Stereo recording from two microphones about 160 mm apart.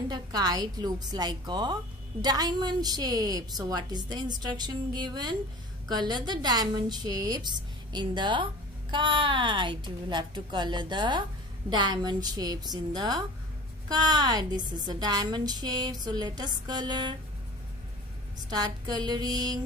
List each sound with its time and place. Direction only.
0.1 s a woman's voice: 25° right (ahead or behind)
18.5 s a woman's voice: 25° right (ahead or behind)